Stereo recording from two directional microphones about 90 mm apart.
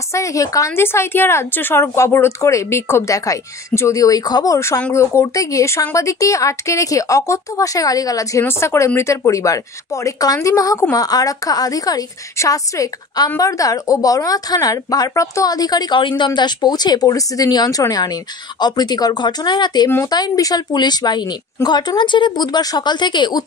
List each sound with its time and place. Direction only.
0.1 s speech: 35° left (ahead or behind)
4.9 s speech: 30° left (ahead or behind); by 16.3 s 60° left (ahead or behind)
16.3 s speech: 50° left (ahead or behind)